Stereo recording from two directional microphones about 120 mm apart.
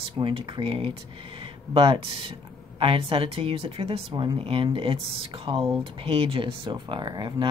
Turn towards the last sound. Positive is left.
turn(degrees=-40)  # may be behind; listen again after turning